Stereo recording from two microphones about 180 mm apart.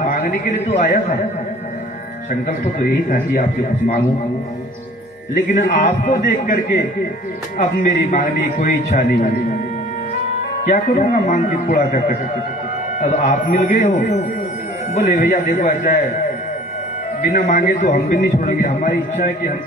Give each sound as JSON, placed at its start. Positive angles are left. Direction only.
{"t": 0.0, "sound": "a man's voice", "side_deg": 50}
{"t": 2.4, "sound": "a man's voice", "side_deg": 50}
{"t": 5.5, "sound": "a man's voice", "side_deg": 45}
{"t": 10.6, "sound": "a man's voice", "side_deg": 40}
{"t": 17.2, "sound": "a man's voice", "side_deg": 50}